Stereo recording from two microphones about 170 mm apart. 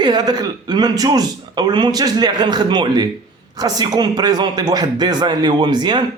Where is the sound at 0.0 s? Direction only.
25° right (ahead or behind).